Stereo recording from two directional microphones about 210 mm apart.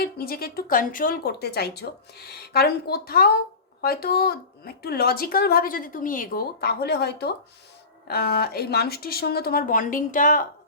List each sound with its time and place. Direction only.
0.0 s speech: 45° left (ahead or behind)